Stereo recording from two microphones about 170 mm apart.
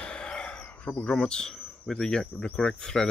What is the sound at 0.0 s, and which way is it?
Speech, 5° left (ahead or behind).